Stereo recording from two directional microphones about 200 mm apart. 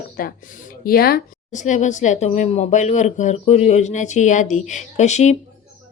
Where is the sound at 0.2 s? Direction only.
45° left (ahead or behind).